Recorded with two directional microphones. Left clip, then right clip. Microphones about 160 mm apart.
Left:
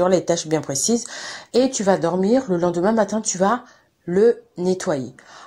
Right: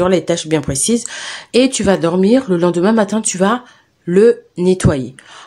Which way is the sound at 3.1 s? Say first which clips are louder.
Right 5 dB; 55° right (ahead or behind).